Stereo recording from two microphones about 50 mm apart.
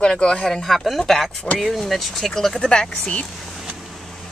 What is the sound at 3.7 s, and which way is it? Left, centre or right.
Vehicle, centre.